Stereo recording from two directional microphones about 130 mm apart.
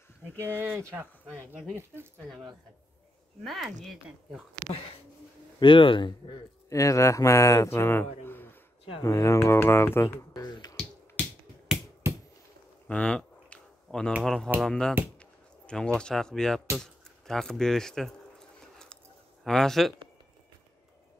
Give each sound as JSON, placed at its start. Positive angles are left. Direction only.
{"t": 0.6, "sound": "speech", "side_deg": -20}
{"t": 1.3, "sound": "speech", "side_deg": 5}
{"t": 3.4, "sound": "speech", "side_deg": 0}
{"t": 5.6, "sound": "a man's voice", "side_deg": 40}
{"t": 6.7, "sound": "speech", "side_deg": 25}
{"t": 8.3, "sound": "a sound", "side_deg": 15}
{"t": 9.0, "sound": "speech", "side_deg": 20}
{"t": 10.4, "sound": "finger snapping", "side_deg": 30}
{"t": 12.8, "sound": "a sound", "side_deg": 10}
{"t": 13.8, "sound": "speech", "side_deg": 5}
{"t": 18.6, "sound": "a sound", "side_deg": 5}
{"t": 19.4, "sound": "speech", "side_deg": 5}